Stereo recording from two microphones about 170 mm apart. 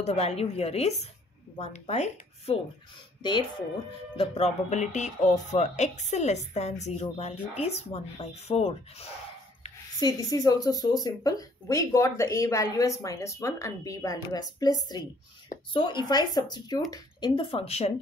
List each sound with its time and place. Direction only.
0.0 s speech: 40° left (ahead or behind)
3.2 s speech: 25° left (ahead or behind)
4.2 s speech: 40° left (ahead or behind)
9.9 s speech: 20° left (ahead or behind); by 17.9 s 35° left (ahead or behind)